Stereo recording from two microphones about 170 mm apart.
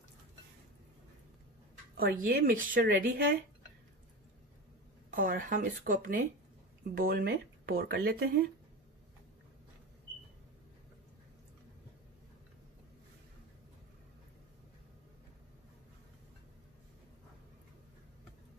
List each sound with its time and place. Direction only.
2.0 s speech: 60° right (ahead or behind)
5.1 s speech: 55° right (ahead or behind)